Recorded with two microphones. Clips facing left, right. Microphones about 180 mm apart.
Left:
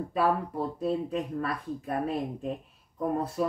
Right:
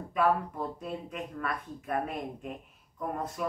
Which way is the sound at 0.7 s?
30° left (ahead or behind).